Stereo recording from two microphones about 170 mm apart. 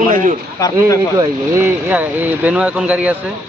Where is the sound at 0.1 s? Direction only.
50° right (ahead or behind).